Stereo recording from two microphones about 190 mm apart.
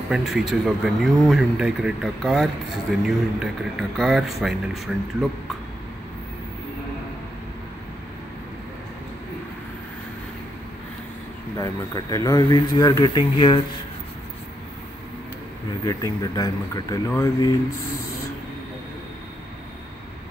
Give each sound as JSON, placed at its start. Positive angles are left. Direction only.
{"t": 0.1, "sound": "speech", "side_deg": 0}
{"t": 11.5, "sound": "speech", "side_deg": 15}
{"t": 15.8, "sound": "speech", "side_deg": 15}